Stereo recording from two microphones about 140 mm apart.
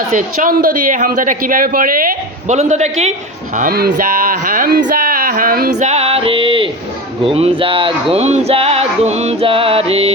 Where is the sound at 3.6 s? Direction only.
90° right.